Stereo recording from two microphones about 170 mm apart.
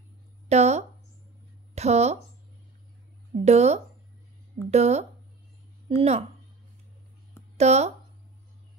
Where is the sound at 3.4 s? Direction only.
40° right (ahead or behind).